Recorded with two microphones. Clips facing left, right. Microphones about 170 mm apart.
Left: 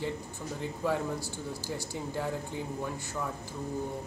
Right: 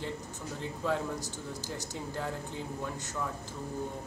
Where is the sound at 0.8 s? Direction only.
10° left (ahead or behind).